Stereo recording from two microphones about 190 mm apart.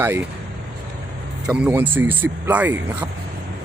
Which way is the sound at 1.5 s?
5° right (ahead or behind).